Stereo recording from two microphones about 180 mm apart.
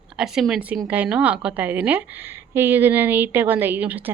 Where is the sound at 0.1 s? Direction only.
5° right (ahead or behind).